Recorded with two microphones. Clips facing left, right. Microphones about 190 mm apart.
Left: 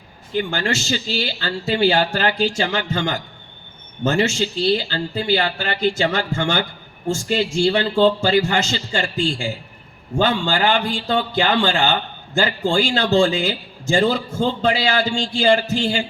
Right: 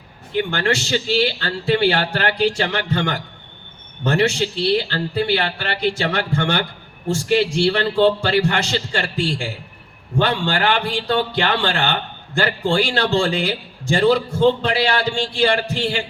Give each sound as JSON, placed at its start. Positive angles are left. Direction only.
{"t": 0.3, "sound": "speech", "side_deg": -65}